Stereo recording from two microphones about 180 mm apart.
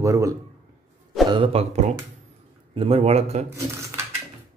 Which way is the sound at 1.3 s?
30° right (ahead or behind).